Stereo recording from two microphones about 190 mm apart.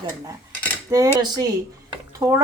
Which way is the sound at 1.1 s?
20° right (ahead or behind).